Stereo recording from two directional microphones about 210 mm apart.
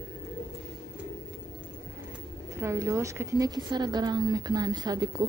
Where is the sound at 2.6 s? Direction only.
15° right (ahead or behind).